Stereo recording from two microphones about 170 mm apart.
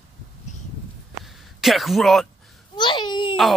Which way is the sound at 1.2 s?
Centre (ahead or behind).